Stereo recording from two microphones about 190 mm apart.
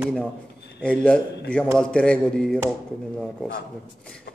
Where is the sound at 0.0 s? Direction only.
Centre (ahead or behind).